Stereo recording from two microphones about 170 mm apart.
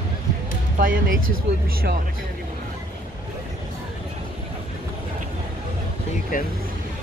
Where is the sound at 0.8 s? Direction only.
55° right (ahead or behind).